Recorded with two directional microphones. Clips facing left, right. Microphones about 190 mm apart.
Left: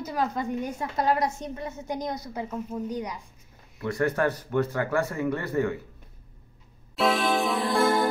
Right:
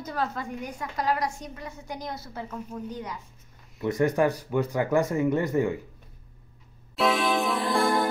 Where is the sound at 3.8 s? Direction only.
20° right (ahead or behind).